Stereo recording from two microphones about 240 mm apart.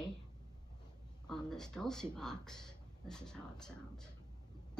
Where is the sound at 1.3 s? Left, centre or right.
Centre.